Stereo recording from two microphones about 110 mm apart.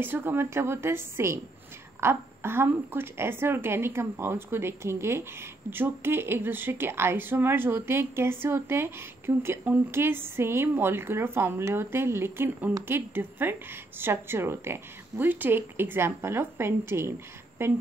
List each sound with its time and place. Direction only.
0.0 s a woman's voice: 20° right (ahead or behind)